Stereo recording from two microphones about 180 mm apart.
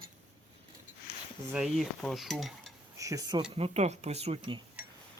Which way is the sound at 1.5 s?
Centre (ahead or behind).